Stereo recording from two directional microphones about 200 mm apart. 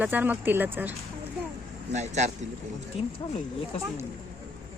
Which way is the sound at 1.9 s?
35° right (ahead or behind).